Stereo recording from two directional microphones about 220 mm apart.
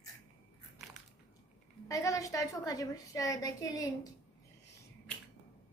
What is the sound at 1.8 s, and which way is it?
A woman's voice, 15° left (ahead or behind).